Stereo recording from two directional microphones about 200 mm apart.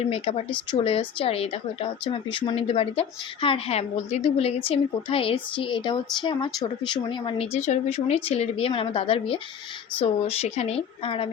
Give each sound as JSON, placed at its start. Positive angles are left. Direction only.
{"t": 0.0, "sound": "a woman's voice", "side_deg": 30}